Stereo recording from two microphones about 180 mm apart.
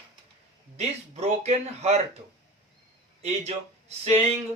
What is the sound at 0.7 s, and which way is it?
Speech, 35° right (ahead or behind).